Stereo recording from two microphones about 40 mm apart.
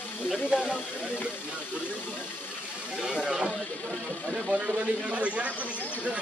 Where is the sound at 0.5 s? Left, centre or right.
Right.